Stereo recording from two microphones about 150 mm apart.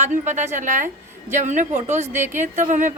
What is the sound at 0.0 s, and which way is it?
A woman's voice, 50° right (ahead or behind).